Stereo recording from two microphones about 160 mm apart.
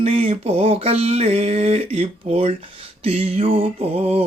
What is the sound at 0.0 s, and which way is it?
Mantra, 35° right (ahead or behind).